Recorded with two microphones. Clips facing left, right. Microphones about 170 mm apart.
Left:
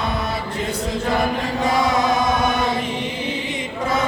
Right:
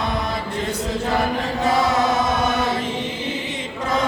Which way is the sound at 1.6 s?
15° left (ahead or behind).